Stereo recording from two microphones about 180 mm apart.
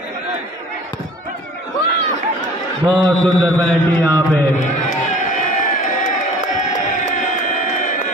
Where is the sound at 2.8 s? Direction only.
25° right (ahead or behind).